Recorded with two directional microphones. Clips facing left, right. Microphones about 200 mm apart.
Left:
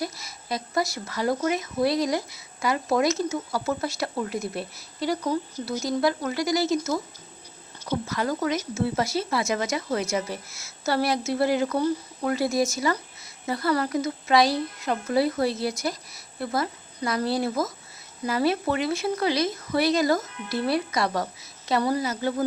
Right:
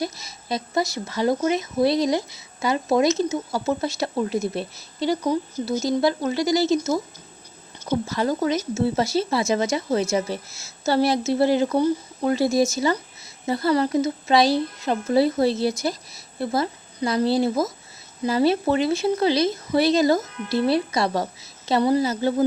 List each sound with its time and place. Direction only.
0.0 s speech: 25° right (ahead or behind)